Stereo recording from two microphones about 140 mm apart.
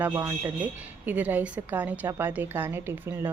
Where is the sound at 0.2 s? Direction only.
20° right (ahead or behind).